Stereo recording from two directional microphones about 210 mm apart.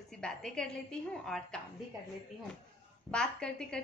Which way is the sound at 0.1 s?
5° left (ahead or behind).